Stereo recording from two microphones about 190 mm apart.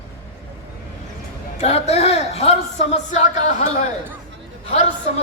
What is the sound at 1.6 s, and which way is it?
A man's voice, 35° left (ahead or behind).